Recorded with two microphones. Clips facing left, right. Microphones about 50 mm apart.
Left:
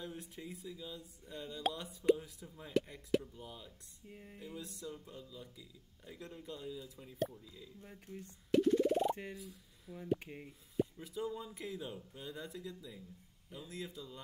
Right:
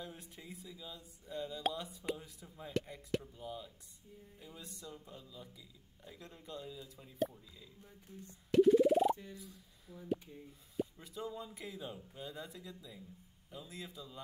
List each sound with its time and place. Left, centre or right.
0.0 s speech: centre
4.1 s speech: left
4.6 s speech: centre
8.5 s a sound: centre
9.4 s speech: centre
10.1 s speech: left
10.8 s speech: centre